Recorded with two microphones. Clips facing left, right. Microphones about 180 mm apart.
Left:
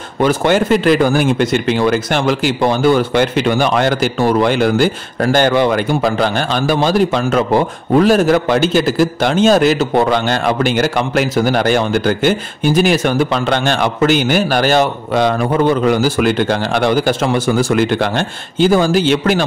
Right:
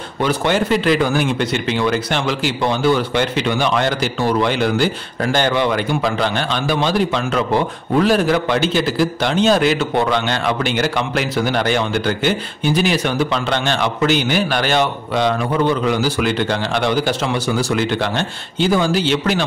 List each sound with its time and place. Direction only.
0.2 s speech: 45° left (ahead or behind)